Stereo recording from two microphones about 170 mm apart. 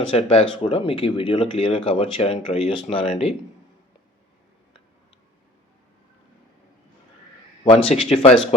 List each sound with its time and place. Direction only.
0.1 s speech: 35° left (ahead or behind)
7.6 s speech: 30° left (ahead or behind)